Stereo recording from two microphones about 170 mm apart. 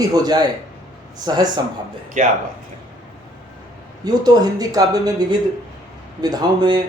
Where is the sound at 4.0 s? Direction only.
20° right (ahead or behind).